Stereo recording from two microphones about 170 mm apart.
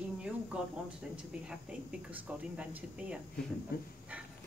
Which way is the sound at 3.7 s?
65° left (ahead or behind).